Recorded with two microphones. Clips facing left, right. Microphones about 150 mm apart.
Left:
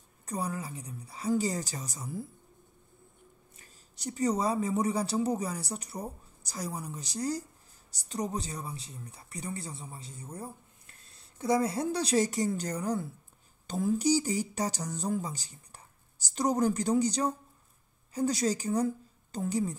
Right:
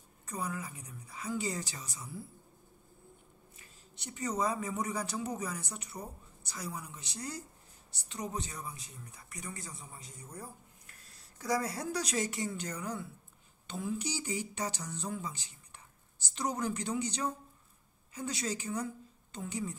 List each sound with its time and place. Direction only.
0.3 s speech: 35° left (ahead or behind)
3.5 s speech: 40° left (ahead or behind)